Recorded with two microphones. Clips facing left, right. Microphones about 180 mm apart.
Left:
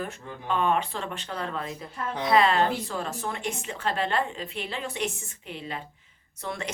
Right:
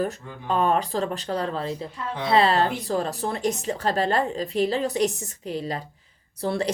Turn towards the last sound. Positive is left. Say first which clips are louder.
# right 9 dB
turn(degrees=-35)  # may be behind; listen again after turning